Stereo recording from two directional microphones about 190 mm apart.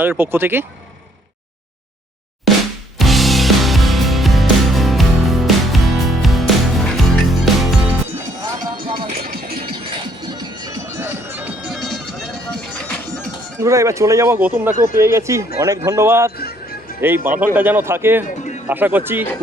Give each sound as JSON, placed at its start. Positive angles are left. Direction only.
{"t": 0.0, "sound": "speech", "side_deg": -10}
{"t": 3.0, "sound": "music", "side_deg": 0}
{"t": 8.4, "sound": "music", "side_deg": -25}
{"t": 9.1, "sound": "music", "side_deg": -55}
{"t": 9.6, "sound": "music", "side_deg": -25}
{"t": 13.6, "sound": "speech", "side_deg": -15}
{"t": 17.3, "sound": "speech", "side_deg": -10}